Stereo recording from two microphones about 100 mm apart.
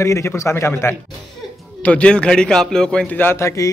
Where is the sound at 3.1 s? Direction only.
25° left (ahead or behind).